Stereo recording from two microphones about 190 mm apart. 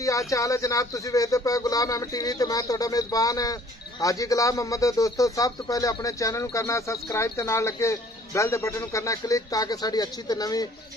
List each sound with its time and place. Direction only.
0.0 s speech: 15° left (ahead or behind)